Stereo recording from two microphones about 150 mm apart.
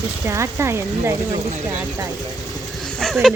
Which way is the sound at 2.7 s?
5° left (ahead or behind).